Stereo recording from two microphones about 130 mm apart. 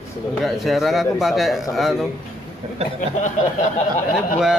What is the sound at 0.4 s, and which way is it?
Speech, centre (ahead or behind).